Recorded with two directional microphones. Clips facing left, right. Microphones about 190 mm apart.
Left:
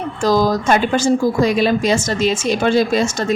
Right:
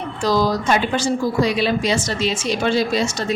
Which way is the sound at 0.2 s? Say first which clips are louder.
Left 3 dB; 45° left (ahead or behind).